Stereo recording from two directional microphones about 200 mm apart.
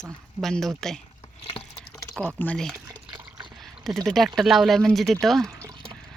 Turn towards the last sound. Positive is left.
turn(degrees=0)  # may be behind; listen again after turning